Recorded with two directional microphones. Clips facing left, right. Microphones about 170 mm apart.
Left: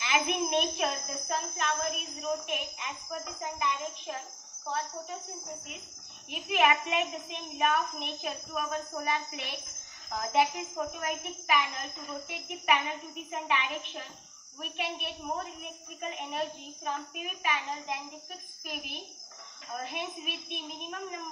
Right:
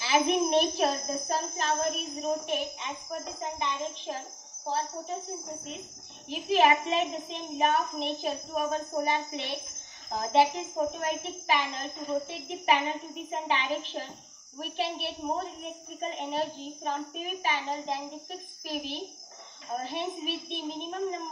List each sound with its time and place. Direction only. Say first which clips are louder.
0.0 s a child's voice: right 5 dB; 35° right (ahead or behind)
6.2 s a child's voice: right 4 dB; 30° right (ahead or behind)